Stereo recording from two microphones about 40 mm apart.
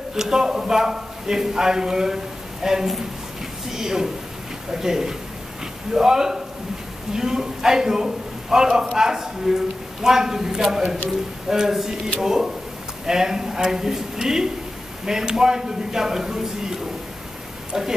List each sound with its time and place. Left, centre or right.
0.1 s a man's voice: centre